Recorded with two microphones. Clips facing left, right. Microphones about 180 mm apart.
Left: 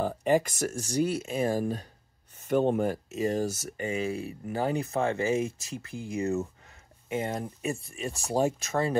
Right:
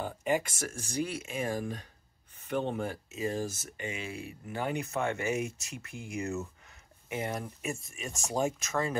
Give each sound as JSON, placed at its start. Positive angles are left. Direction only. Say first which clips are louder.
{"t": 0.0, "sound": "speech", "louder": "left 6 dB", "side_deg": 35}